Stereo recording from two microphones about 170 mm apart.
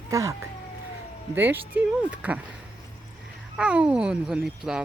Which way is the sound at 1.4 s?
10° right (ahead or behind).